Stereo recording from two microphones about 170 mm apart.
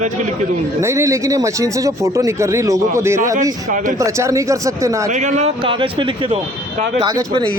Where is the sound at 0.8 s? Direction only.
15° right (ahead or behind).